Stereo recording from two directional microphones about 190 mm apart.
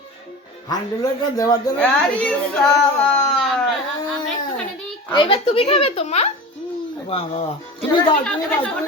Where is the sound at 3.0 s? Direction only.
5° left (ahead or behind).